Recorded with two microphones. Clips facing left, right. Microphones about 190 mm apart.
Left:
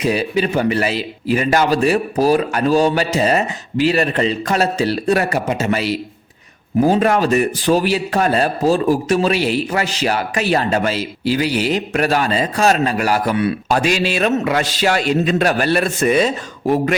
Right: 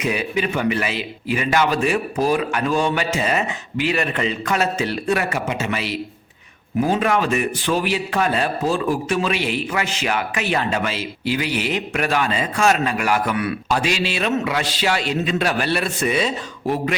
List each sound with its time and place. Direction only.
0.0 s a man's voice: 35° left (ahead or behind)
13.7 s a man's voice: 45° left (ahead or behind)